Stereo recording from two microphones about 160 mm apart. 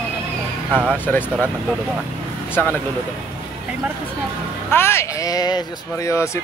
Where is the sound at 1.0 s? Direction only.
15° left (ahead or behind).